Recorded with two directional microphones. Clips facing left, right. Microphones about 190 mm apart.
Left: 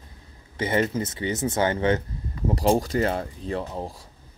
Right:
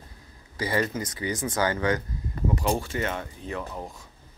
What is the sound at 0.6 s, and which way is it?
Speech, 25° left (ahead or behind).